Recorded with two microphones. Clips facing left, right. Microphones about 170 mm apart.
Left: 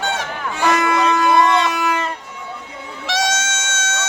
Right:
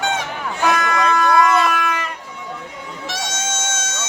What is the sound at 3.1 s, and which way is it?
Music, 85° left.